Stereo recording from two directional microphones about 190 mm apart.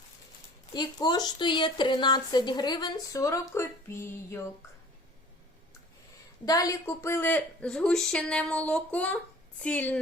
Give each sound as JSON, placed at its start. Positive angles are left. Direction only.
{"t": 0.7, "sound": "speech", "side_deg": 20}
{"t": 6.4, "sound": "a woman's voice", "side_deg": 20}